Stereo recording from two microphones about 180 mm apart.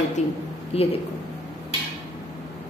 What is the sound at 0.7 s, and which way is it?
Speech, 35° left (ahead or behind).